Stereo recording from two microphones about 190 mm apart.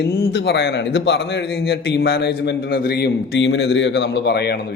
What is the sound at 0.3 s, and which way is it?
A man's voice, 60° left (ahead or behind).